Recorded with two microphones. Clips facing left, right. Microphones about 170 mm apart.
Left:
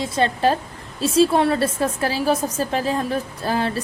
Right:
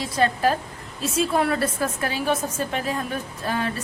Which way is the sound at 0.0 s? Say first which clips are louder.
Left 2 dB; 25° left (ahead or behind).